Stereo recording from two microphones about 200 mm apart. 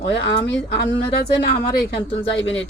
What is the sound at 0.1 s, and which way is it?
Speech, 60° left (ahead or behind).